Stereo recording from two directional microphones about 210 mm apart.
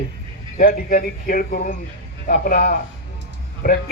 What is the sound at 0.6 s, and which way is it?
Speech, 40° left (ahead or behind).